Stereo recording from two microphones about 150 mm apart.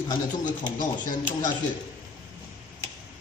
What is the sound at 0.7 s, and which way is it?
Speech, 55° left (ahead or behind).